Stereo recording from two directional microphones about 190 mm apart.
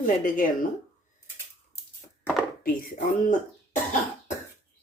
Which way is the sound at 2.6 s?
45° left (ahead or behind).